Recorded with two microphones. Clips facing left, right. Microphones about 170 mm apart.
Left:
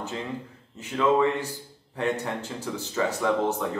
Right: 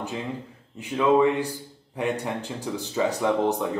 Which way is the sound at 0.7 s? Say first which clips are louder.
Right 2 dB; 15° right (ahead or behind).